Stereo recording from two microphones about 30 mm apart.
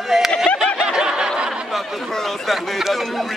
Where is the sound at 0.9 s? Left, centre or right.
Right.